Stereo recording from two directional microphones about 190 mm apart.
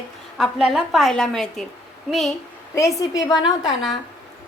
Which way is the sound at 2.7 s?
15° left (ahead or behind).